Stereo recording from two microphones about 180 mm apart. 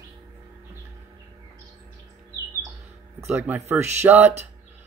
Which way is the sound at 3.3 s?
10° right (ahead or behind).